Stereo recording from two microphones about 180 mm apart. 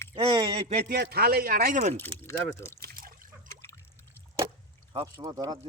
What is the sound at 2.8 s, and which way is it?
Trickle, 55° right (ahead or behind).